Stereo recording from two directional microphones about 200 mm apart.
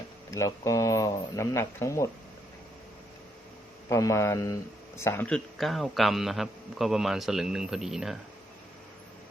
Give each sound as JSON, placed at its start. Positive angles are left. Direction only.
{"t": 0.3, "sound": "speech", "side_deg": 15}
{"t": 3.8, "sound": "a man's voice", "side_deg": 15}